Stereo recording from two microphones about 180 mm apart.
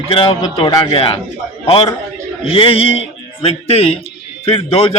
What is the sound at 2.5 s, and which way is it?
A man's voice, 30° left (ahead or behind).